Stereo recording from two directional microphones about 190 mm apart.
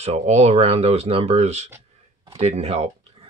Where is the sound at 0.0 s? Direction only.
35° right (ahead or behind).